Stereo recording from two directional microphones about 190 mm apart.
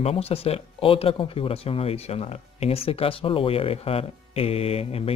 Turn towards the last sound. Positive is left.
turn(degrees=30)  # may be behind; listen again after turning